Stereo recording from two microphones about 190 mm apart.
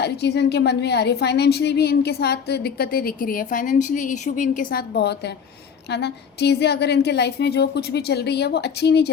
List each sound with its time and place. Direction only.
0.0 s a woman's voice: 60° left (ahead or behind)